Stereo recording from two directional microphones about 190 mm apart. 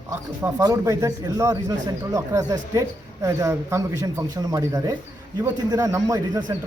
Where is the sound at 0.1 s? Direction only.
15° right (ahead or behind).